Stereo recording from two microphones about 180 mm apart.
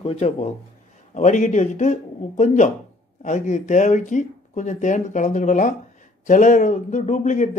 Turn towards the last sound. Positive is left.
turn(degrees=45)  # may be behind; listen again after turning